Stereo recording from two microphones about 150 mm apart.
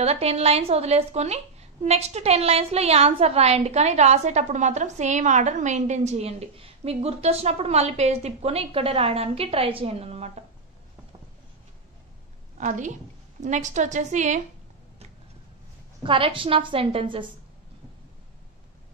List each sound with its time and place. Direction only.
0.0 s a woman's voice: 45° right (ahead or behind)
12.5 s a woman's voice: 55° right (ahead or behind)
16.0 s a woman's voice: 35° right (ahead or behind)